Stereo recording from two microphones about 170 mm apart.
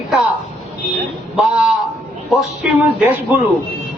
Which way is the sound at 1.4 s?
5° right (ahead or behind).